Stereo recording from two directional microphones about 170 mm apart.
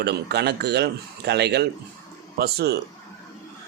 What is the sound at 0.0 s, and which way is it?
A man's voice, 75° right (ahead or behind).